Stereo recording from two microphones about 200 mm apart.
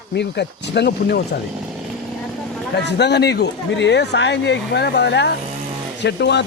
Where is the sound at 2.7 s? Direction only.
60° left (ahead or behind).